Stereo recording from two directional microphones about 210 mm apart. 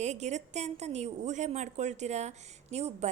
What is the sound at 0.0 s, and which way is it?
A woman's voice, 35° right (ahead or behind).